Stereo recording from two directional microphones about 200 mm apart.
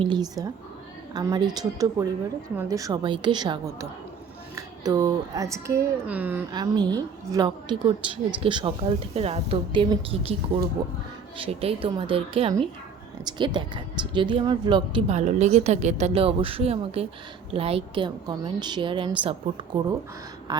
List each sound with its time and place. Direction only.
0.0 s a woman's voice: 20° right (ahead or behind)
6.5 s a woman's voice: 20° right (ahead or behind)
11.3 s a woman's voice: 30° right (ahead or behind)